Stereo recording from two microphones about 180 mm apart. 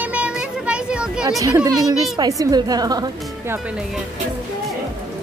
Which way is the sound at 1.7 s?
20° right (ahead or behind).